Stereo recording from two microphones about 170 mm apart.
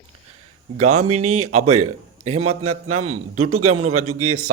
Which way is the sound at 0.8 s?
40° right (ahead or behind).